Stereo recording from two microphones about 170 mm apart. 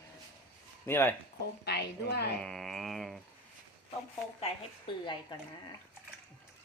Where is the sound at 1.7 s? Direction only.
75° left (ahead or behind).